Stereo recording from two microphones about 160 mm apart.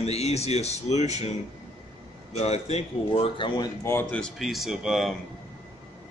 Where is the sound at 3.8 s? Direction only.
15° left (ahead or behind).